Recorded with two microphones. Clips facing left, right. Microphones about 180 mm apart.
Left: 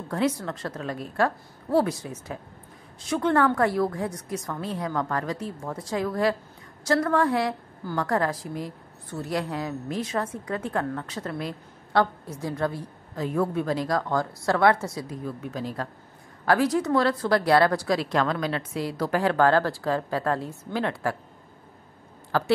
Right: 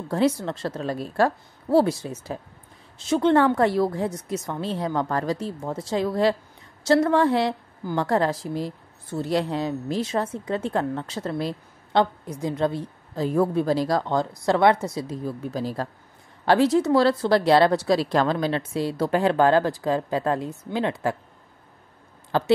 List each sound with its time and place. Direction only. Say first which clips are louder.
0.1 s speech: right 4 dB; 30° right (ahead or behind)
12.0 s speech: right 2 dB; 20° right (ahead or behind)
15.2 s speech: right 3 dB; 35° right (ahead or behind); by 21.2 s 20° right (ahead or behind)
22.3 s speech: right 2 dB; 20° right (ahead or behind)